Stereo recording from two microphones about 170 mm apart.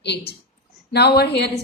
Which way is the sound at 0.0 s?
80° left.